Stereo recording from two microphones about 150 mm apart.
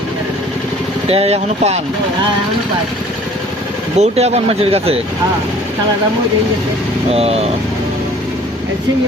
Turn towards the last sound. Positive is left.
turn(degrees=-45)  # may be behind; listen again after turning